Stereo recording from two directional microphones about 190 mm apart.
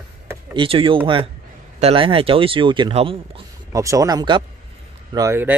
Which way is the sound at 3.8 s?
15° right (ahead or behind).